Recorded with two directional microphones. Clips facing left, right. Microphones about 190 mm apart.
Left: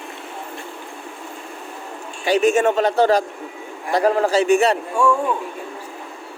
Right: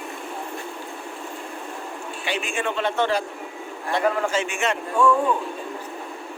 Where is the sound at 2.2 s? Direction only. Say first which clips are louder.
Left 12 dB; 40° left (ahead or behind).